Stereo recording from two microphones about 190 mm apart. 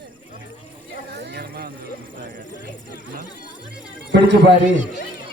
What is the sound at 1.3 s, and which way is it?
Vehicle, 55° right (ahead or behind).